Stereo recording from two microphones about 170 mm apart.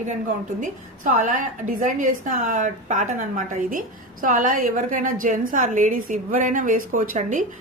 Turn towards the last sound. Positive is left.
turn(degrees=-50)  # may be behind; listen again after turning